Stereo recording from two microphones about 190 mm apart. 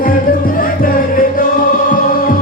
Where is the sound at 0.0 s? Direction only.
50° left (ahead or behind).